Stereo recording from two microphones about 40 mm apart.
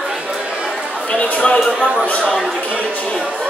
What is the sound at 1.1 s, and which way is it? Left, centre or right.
Speech, left.